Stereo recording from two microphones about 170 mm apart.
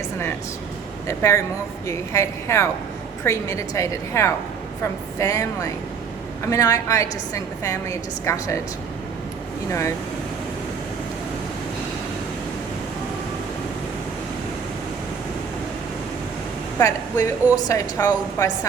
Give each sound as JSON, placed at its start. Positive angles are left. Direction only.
{"t": 1.0, "sound": "a woman's voice", "side_deg": 15}
{"t": 16.7, "sound": "a woman's voice", "side_deg": 20}